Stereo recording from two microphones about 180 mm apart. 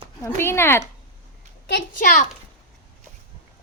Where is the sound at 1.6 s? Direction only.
65° left (ahead or behind).